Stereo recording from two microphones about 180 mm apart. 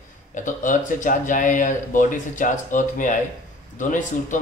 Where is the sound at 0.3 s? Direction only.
45° left (ahead or behind).